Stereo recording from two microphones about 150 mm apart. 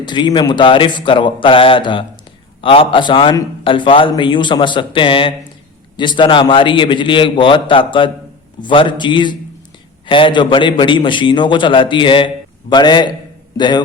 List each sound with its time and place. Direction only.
0.0 s a man's voice: 30° left (ahead or behind)